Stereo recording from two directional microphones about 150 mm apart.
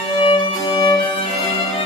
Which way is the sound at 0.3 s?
30° left (ahead or behind).